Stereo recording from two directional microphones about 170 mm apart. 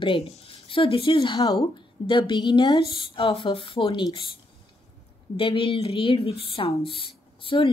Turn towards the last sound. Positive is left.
turn(degrees=30)  # may be behind; listen again after turning